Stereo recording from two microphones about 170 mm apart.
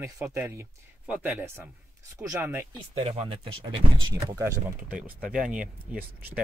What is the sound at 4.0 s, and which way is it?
Speech, 20° right (ahead or behind).